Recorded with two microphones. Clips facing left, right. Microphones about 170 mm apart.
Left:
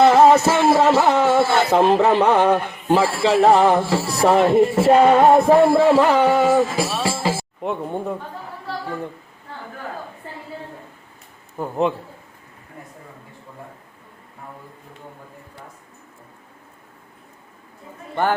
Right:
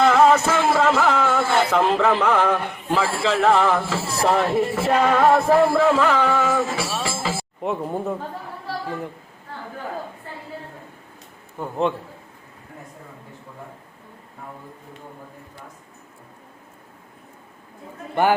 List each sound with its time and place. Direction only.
0.0 s music: 35° left (ahead or behind)
4.4 s speech: 20° left (ahead or behind)
4.8 s speech: 35° left (ahead or behind)
5.6 s speech: 35° left (ahead or behind)
6.2 s music: 35° left (ahead or behind)
7.6 s speech: centre (ahead or behind)
11.6 s speech: 5° left (ahead or behind)